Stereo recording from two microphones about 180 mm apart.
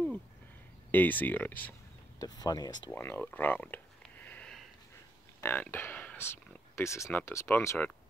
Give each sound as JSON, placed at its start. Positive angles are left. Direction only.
{"t": 0.9, "sound": "speech", "side_deg": 10}
{"t": 2.2, "sound": "speech", "side_deg": 20}